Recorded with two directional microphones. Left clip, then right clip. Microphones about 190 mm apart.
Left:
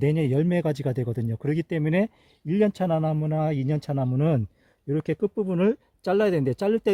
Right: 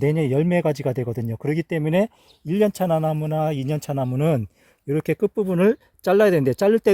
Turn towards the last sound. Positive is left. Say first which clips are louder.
# right 6 dB
turn(degrees=-40)  # may be behind; listen again after turning